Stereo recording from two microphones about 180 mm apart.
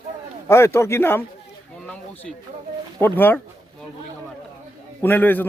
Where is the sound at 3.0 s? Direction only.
10° left (ahead or behind).